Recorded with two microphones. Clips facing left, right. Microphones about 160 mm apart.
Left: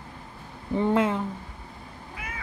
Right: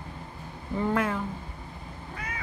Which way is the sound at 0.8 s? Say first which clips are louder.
Left 4 dB; 20° left (ahead or behind).